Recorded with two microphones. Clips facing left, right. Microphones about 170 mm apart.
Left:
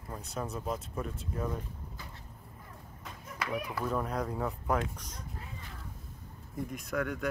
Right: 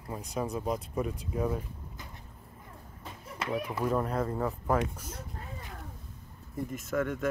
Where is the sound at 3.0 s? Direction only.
25° right (ahead or behind).